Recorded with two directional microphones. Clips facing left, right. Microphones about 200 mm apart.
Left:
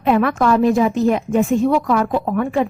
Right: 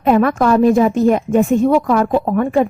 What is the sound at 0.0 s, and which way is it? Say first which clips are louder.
A woman's voice: right 3 dB; 45° right (ahead or behind).